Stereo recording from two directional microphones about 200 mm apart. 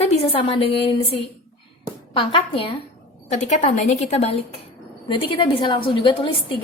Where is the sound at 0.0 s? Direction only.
30° left (ahead or behind).